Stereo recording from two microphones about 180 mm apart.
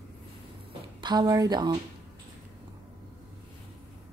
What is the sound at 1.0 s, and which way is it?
Speech, 25° right (ahead or behind).